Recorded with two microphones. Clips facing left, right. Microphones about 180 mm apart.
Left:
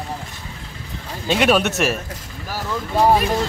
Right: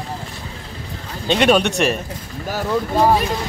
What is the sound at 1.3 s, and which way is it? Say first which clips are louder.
Speech: right 2 dB; 5° left (ahead or behind).